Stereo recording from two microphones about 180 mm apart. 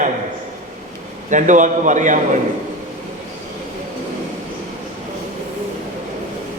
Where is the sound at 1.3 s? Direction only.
45° right (ahead or behind).